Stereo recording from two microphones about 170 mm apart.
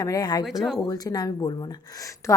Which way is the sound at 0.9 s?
25° left (ahead or behind).